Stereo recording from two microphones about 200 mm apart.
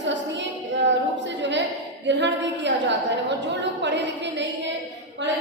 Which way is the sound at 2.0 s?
60° right (ahead or behind).